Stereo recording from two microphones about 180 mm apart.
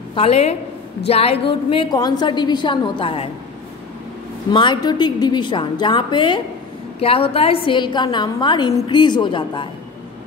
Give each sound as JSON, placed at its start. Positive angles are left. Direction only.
{"t": 0.1, "sound": "a woman's voice", "side_deg": 35}
{"t": 4.5, "sound": "a woman's voice", "side_deg": 25}